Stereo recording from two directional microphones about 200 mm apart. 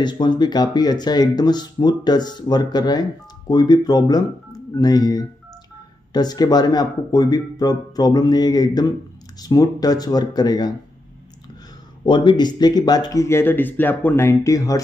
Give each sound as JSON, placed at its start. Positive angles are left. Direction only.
{"t": 0.0, "sound": "speech", "side_deg": 20}
{"t": 12.0, "sound": "speech", "side_deg": 25}